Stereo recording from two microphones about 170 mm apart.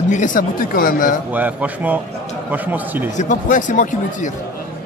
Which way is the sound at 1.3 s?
10° right (ahead or behind).